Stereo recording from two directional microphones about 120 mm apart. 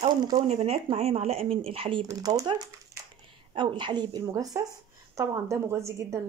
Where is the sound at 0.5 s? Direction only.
60° right (ahead or behind).